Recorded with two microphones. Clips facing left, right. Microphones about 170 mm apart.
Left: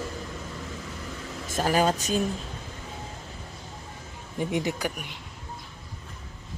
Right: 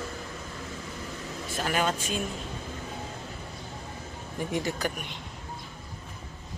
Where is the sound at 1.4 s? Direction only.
40° left (ahead or behind).